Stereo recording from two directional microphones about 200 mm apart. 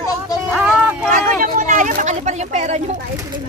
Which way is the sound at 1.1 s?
40° right (ahead or behind).